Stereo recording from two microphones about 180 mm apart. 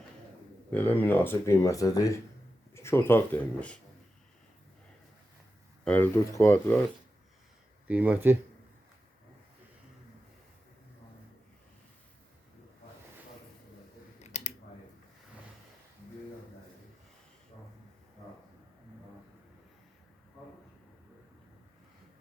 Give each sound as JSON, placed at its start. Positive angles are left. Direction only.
{"t": 0.7, "sound": "speech", "side_deg": 10}
{"t": 5.8, "sound": "speech", "side_deg": 10}
{"t": 7.9, "sound": "speech", "side_deg": -10}
{"t": 14.2, "sound": "scissors", "side_deg": 40}